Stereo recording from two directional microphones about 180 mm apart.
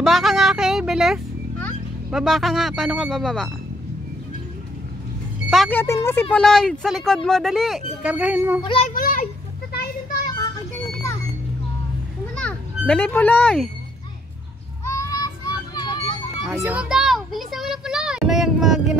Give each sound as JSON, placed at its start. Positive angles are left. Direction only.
{"t": 0.0, "sound": "music", "side_deg": 0}
{"t": 2.0, "sound": "speech", "side_deg": 0}
{"t": 5.5, "sound": "speech", "side_deg": 0}
{"t": 8.6, "sound": "a child's voice", "side_deg": 35}
{"t": 8.9, "sound": "children playing", "side_deg": 50}
{"t": 12.4, "sound": "a child's voice", "side_deg": 5}
{"t": 14.9, "sound": "children playing", "side_deg": 15}
{"t": 16.5, "sound": "a sound", "side_deg": -10}